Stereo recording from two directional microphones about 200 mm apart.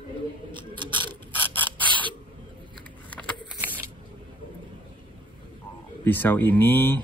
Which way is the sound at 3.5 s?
10° right (ahead or behind).